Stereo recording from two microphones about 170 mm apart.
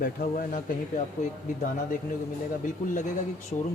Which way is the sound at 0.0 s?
55° left (ahead or behind).